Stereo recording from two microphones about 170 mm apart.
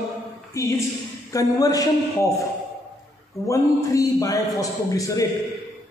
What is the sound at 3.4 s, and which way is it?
Speech, 20° left (ahead or behind).